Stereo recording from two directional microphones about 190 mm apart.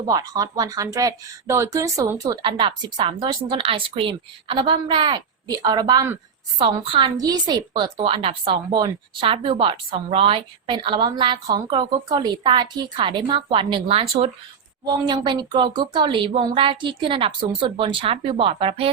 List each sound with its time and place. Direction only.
0.1 s a woman's voice: 20° right (ahead or behind)